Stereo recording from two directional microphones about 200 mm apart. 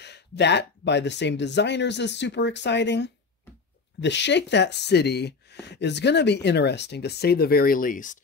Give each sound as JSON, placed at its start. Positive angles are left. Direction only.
{"t": 0.0, "sound": "speech", "side_deg": 60}